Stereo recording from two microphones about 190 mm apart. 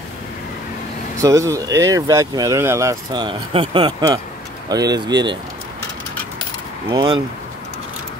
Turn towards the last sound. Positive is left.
turn(degrees=-25)  # may be behind; listen again after turning